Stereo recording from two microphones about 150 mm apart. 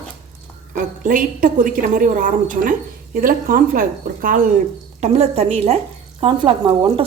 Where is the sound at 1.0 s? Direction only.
60° right (ahead or behind).